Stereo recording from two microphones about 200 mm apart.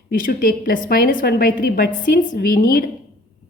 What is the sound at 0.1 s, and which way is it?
A woman's voice, 45° left (ahead or behind).